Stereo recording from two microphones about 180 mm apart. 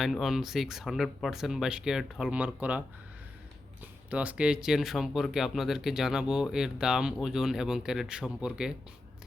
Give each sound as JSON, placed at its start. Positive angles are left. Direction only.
{"t": 0.0, "sound": "speech", "side_deg": 0}
{"t": 4.1, "sound": "speech", "side_deg": -10}